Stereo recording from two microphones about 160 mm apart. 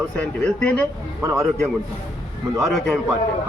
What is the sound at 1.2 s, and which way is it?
Speech, 20° right (ahead or behind).